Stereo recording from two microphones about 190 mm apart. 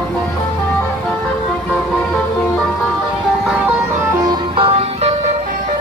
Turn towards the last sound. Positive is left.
turn(degrees=-35)  # may be behind; listen again after turning